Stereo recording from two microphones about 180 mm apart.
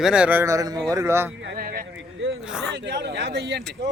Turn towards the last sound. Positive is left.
turn(degrees=-75)  # may be behind; listen again after turning